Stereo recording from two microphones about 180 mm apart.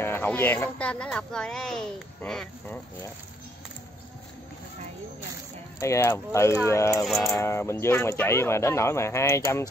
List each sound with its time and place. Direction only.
0.0 s speech: 10° left (ahead or behind)
5.8 s speech: 15° left (ahead or behind)